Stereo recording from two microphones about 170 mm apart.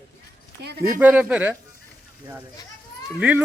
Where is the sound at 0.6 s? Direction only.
70° right (ahead or behind).